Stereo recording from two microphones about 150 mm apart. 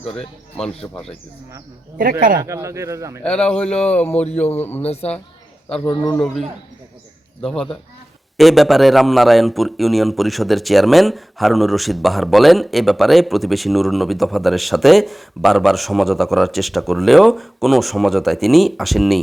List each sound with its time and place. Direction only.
0.0 s a man's voice: 5° left (ahead or behind)
2.4 s speech: 20° right (ahead or behind)
3.2 s a man's voice: 5° left (ahead or behind)
4.8 s speech: 45° left (ahead or behind)
5.8 s a man's voice: 25° left (ahead or behind)
6.1 s a man's voice: 5° left (ahead or behind)
7.4 s a man's voice: 5° left (ahead or behind)